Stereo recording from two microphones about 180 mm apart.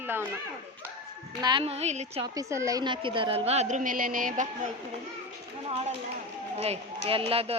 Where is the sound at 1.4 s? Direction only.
25° right (ahead or behind).